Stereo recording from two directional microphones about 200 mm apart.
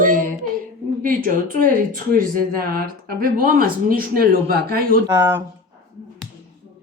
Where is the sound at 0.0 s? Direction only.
45° right (ahead or behind).